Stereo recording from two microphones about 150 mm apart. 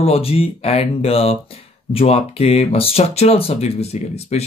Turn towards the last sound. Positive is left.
turn(degrees=45)  # may be behind; listen again after turning